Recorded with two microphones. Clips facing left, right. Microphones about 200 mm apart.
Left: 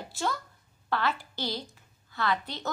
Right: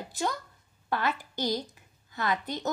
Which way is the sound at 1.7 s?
15° right (ahead or behind).